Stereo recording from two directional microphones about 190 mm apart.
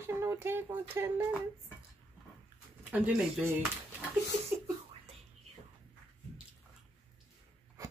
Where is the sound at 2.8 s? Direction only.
5° right (ahead or behind).